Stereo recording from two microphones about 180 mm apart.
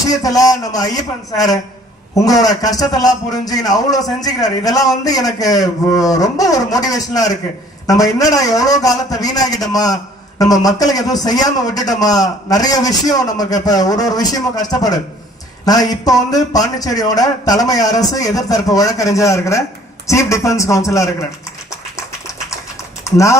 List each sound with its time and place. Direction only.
0.1 s a man's voice: 20° left (ahead or behind)
23.0 s a man's voice: 15° left (ahead or behind)